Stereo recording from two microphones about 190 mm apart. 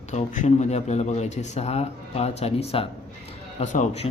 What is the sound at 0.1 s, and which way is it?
Speech, 35° left (ahead or behind).